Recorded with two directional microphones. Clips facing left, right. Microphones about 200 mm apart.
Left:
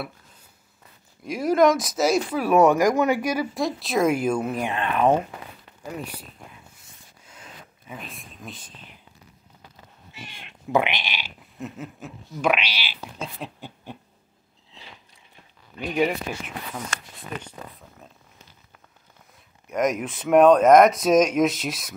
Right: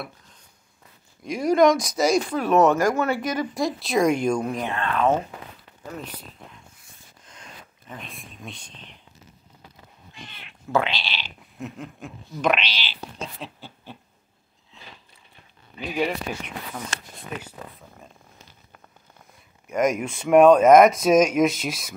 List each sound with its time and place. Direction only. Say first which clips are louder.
1.2 s speech: right 1 dB; 5° left (ahead or behind)
3.5 s speech: right 1 dB; centre (ahead or behind)
7.2 s whispering: even; 5° left (ahead or behind)
10.1 s speech: left 2 dB; 10° left (ahead or behind)
11.6 s speech: even; 5° left (ahead or behind)
16.0 s speech: left 2 dB; 5° left (ahead or behind)
17.4 s speech: even; 10° right (ahead or behind)
19.7 s speech: right 1 dB; centre (ahead or behind)